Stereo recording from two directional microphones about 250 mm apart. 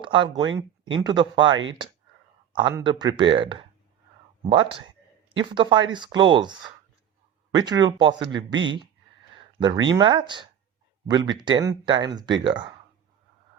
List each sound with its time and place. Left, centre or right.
0.0 s speech: centre
9.6 s speech: centre
11.4 s speech: centre